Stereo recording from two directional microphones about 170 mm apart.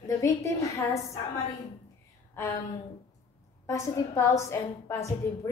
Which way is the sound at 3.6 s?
20° left (ahead or behind).